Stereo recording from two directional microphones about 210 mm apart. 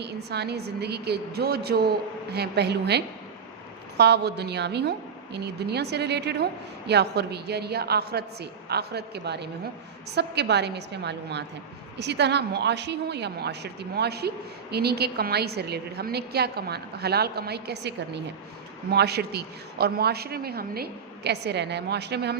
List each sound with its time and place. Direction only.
0.0 s a woman's voice: 50° right (ahead or behind)